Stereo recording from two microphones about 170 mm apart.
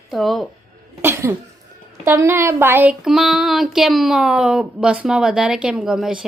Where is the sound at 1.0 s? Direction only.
15° right (ahead or behind).